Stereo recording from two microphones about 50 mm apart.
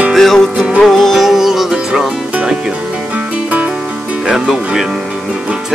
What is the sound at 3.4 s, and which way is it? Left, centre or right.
Music, right.